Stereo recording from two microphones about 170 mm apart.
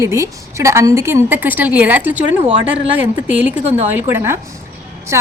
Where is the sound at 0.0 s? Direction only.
15° right (ahead or behind).